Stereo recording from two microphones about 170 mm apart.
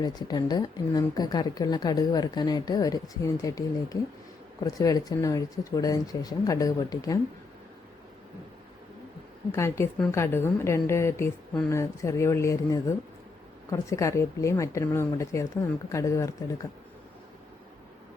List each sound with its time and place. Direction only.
0.0 s speech: 25° left (ahead or behind)
9.5 s speech: 15° left (ahead or behind)